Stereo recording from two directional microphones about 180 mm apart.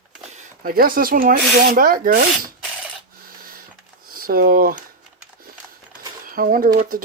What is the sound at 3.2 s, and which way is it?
Printer, 55° right (ahead or behind).